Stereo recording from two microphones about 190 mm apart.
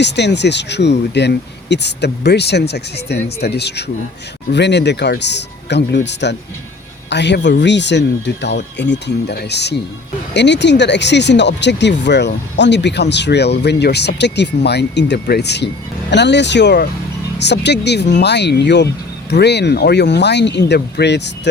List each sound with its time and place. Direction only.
0.0 s speech: 65° left (ahead or behind)